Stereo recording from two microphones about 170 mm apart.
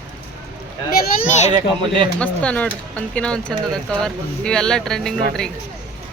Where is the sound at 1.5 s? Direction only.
25° right (ahead or behind).